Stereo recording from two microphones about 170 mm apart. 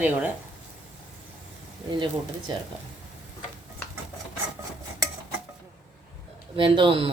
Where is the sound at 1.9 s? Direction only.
30° right (ahead or behind).